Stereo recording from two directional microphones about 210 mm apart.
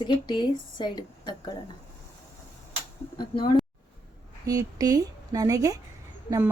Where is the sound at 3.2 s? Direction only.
20° left (ahead or behind).